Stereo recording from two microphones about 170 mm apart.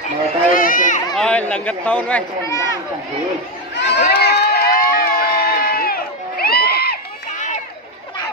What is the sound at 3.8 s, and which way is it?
Crowd, 75° left (ahead or behind).